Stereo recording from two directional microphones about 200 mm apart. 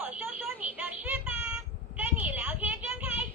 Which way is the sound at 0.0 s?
5° right (ahead or behind).